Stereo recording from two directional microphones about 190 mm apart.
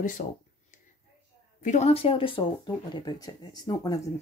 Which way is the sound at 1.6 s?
40° left (ahead or behind).